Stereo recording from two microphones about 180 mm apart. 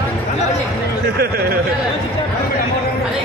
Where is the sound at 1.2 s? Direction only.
60° right (ahead or behind).